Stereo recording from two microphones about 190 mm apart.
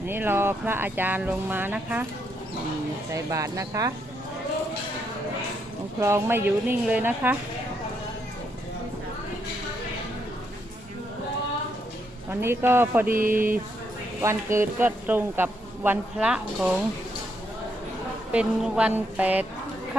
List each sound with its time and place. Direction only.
0.1 s speech: 10° right (ahead or behind)
3.1 s speech: 15° right (ahead or behind)
6.0 s speech: 15° right (ahead or behind)
12.3 s speech: 10° right (ahead or behind)
13.1 s a sound: 45° right (ahead or behind)
14.2 s speech: 15° right (ahead or behind)
18.3 s speech: 5° right (ahead or behind)